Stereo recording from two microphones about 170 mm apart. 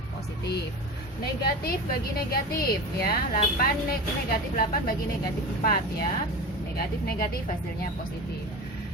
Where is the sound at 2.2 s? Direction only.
65° left (ahead or behind).